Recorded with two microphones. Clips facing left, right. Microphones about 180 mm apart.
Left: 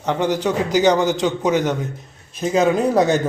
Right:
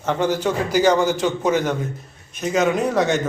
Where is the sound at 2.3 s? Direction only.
30° left (ahead or behind).